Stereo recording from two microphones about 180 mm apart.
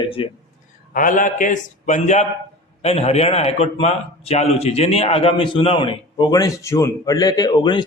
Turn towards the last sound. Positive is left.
turn(degrees=25)  # may be behind; listen again after turning